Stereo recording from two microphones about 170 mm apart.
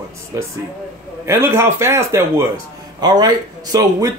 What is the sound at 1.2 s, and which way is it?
A man's voice, 15° right (ahead or behind).